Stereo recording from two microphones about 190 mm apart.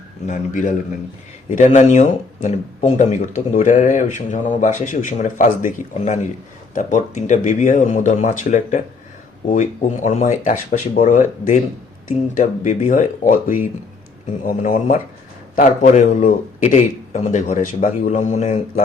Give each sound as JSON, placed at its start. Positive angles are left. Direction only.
{"t": 0.3, "sound": "speech", "side_deg": 40}